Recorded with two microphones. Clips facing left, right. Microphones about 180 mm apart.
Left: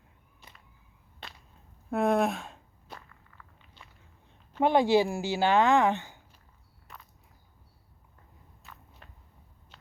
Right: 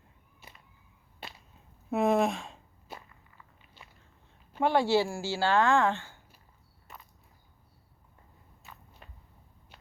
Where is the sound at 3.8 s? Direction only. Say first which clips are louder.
Even; 5° right (ahead or behind).